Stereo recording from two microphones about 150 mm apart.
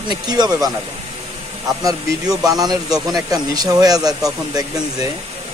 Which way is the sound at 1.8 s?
25° right (ahead or behind).